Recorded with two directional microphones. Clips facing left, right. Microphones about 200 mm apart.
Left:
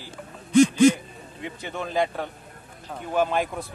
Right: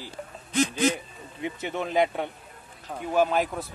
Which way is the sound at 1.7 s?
20° right (ahead or behind).